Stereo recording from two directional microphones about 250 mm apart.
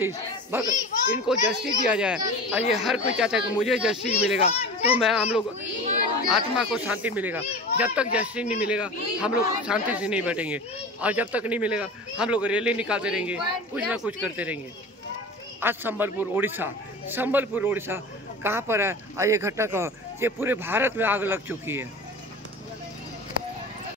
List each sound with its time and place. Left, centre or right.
0.0 s a child's voice: centre
4.4 s a child's voice: left
4.9 s speech: centre
6.5 s speech: centre
15.6 s speech: centre